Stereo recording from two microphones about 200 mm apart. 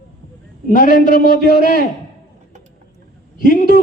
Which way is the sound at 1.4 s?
50° left (ahead or behind).